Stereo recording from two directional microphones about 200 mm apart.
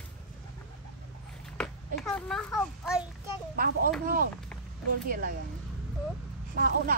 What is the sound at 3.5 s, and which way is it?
Speech, 45° right (ahead or behind).